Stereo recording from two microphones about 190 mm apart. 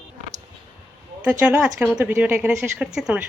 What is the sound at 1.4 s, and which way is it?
A woman's voice, 5° right (ahead or behind).